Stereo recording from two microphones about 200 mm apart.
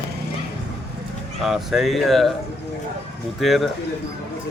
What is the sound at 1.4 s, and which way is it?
Speech, centre (ahead or behind).